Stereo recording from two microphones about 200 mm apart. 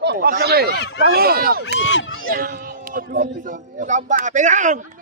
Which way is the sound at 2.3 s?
45° right (ahead or behind).